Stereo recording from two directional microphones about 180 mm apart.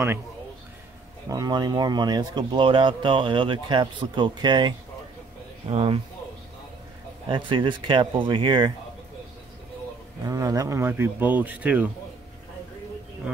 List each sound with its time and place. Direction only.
1.3 s a man's voice: 20° right (ahead or behind)
7.2 s speech: 25° right (ahead or behind)
10.2 s speech: 20° right (ahead or behind)